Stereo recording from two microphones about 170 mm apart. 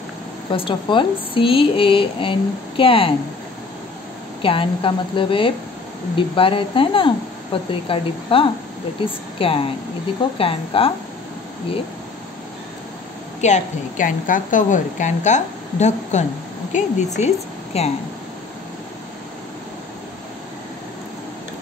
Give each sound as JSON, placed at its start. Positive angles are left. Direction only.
{"t": 0.5, "sound": "speech", "side_deg": 30}
{"t": 4.4, "sound": "speech", "side_deg": 30}
{"t": 13.4, "sound": "a woman's voice", "side_deg": 45}